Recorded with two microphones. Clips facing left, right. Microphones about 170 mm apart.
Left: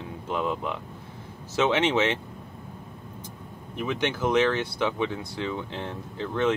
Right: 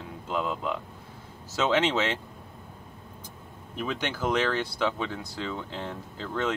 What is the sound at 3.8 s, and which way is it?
Speech, 20° left (ahead or behind).